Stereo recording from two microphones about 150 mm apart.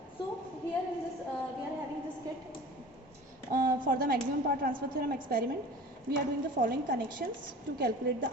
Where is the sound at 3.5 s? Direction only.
70° right (ahead or behind).